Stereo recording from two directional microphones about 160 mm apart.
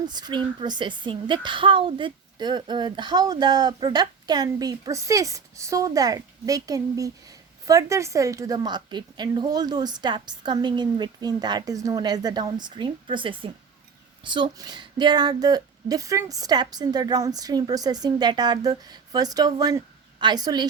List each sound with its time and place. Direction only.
0.1 s a woman's voice: 25° right (ahead or behind)